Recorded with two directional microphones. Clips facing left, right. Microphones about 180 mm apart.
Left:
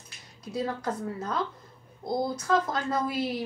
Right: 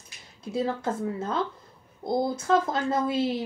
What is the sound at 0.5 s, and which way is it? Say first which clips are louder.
A woman's voice: right 3 dB; 25° right (ahead or behind).